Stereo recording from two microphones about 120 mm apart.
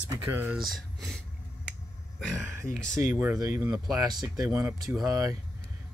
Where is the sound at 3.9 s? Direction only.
35° right (ahead or behind).